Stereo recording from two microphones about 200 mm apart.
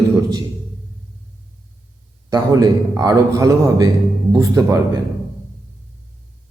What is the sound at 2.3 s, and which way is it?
A man's voice, 20° right (ahead or behind).